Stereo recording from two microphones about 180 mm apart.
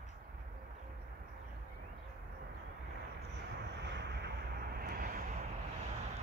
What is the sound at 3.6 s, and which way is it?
Vehicle, 75° right (ahead or behind).